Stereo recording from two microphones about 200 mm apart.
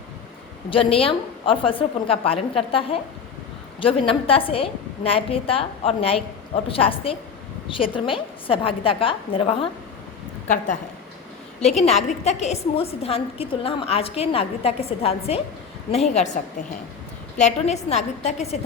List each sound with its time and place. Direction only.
0.7 s a woman's voice: 25° left (ahead or behind)
3.8 s a woman's voice: 25° left (ahead or behind)
11.6 s a woman's voice: 35° left (ahead or behind)
17.4 s a woman's voice: 35° left (ahead or behind)